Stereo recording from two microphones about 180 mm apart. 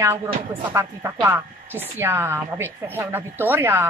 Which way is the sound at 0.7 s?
15° right (ahead or behind).